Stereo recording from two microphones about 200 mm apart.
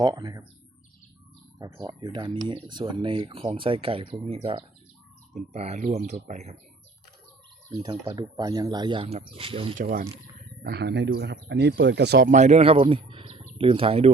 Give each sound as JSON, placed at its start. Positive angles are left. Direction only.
{"t": 0.0, "sound": "speech", "side_deg": -20}
{"t": 1.5, "sound": "speech", "side_deg": -20}
{"t": 7.7, "sound": "speech", "side_deg": -20}
{"t": 9.7, "sound": "speech", "side_deg": -35}
{"t": 10.6, "sound": "speech", "side_deg": -55}
{"t": 12.3, "sound": "speech", "side_deg": -35}